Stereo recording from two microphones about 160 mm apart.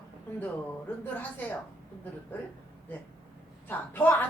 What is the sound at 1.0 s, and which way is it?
Speech, 10° left (ahead or behind).